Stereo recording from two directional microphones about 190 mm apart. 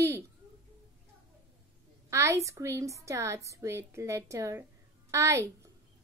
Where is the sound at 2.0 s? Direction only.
15° right (ahead or behind).